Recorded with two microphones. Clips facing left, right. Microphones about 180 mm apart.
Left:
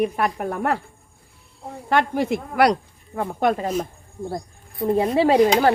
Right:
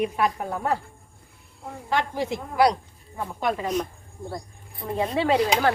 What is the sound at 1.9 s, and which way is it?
Speech, 60° left (ahead or behind).